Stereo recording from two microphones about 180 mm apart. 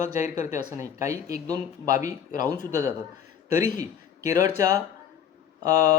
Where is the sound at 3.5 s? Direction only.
15° right (ahead or behind).